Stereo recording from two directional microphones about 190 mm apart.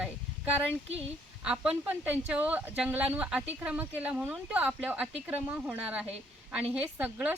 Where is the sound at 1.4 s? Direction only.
5° right (ahead or behind).